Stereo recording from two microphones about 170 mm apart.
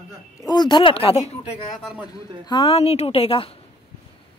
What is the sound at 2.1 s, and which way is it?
Speech, 25° left (ahead or behind).